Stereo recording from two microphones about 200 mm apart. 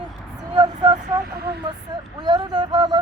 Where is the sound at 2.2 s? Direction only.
20° right (ahead or behind).